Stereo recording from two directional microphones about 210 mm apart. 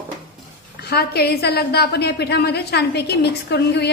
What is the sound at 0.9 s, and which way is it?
A woman's voice, 50° left (ahead or behind).